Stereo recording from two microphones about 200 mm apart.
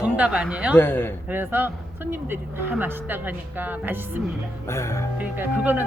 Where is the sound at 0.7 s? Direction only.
10° left (ahead or behind).